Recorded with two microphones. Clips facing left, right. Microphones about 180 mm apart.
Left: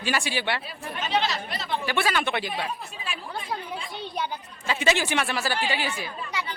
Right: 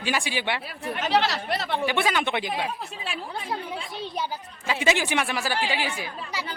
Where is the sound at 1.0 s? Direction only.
70° right (ahead or behind).